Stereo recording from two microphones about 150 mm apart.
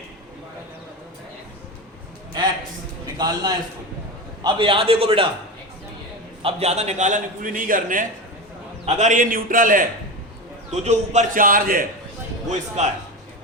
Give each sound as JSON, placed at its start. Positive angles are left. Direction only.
{"t": 3.2, "sound": "a man's voice", "side_deg": -25}
{"t": 6.4, "sound": "a man's voice", "side_deg": -45}
{"t": 8.9, "sound": "a man's voice", "side_deg": -50}
{"t": 10.7, "sound": "a man's voice", "side_deg": -50}
{"t": 12.5, "sound": "a man's voice", "side_deg": -50}